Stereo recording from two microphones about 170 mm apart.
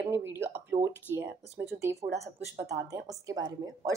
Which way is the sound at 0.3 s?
15° right (ahead or behind).